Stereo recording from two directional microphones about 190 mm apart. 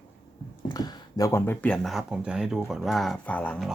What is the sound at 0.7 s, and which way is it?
Speech, 20° left (ahead or behind).